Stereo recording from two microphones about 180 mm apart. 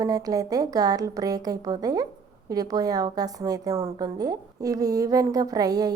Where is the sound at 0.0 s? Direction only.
20° right (ahead or behind).